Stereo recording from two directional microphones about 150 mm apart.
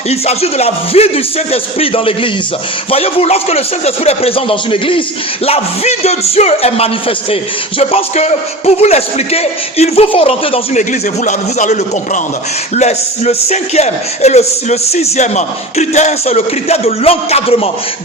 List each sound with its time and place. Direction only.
0.1 s a man's voice: 45° left (ahead or behind)
11.3 s speech: 50° left (ahead or behind)